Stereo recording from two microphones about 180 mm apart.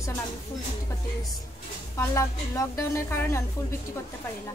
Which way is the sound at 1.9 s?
15° left (ahead or behind).